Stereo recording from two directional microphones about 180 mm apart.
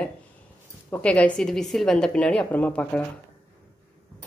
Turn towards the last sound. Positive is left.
turn(degrees=10)  # may be behind; listen again after turning